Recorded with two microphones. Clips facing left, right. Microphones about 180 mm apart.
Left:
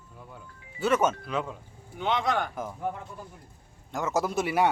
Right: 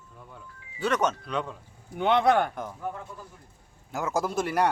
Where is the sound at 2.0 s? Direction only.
60° right (ahead or behind).